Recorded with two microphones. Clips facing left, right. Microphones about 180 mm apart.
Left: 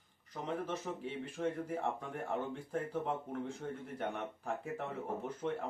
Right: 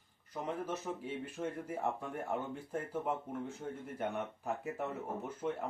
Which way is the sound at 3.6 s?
10° right (ahead or behind).